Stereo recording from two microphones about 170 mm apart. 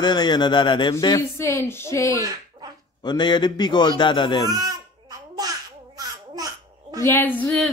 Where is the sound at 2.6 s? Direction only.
30° right (ahead or behind).